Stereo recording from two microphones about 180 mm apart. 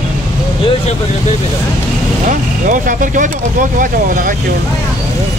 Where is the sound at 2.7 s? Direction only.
45° right (ahead or behind).